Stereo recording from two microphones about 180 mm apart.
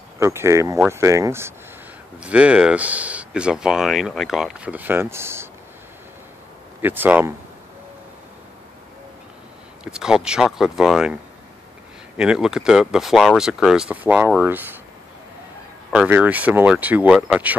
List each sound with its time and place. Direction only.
0.2 s speech: 15° right (ahead or behind)
6.8 s speech: 10° right (ahead or behind)
9.8 s speech: 5° right (ahead or behind)
12.2 s speech: 5° right (ahead or behind)
15.9 s speech: 5° right (ahead or behind)